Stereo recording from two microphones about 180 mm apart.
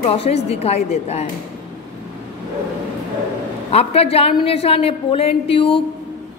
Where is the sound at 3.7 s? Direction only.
35° left (ahead or behind).